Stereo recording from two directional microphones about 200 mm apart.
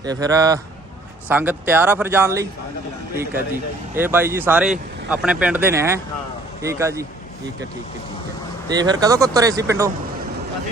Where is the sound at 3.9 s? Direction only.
10° right (ahead or behind).